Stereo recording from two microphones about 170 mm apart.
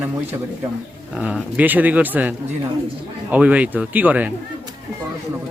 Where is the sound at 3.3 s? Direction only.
10° right (ahead or behind).